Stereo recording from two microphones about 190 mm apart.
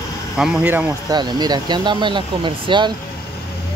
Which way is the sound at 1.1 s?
20° right (ahead or behind).